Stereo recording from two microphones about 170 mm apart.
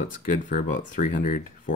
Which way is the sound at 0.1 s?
50° left (ahead or behind).